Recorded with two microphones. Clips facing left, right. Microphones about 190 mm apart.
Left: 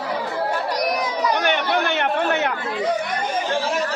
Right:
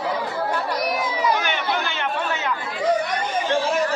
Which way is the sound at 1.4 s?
60° left (ahead or behind).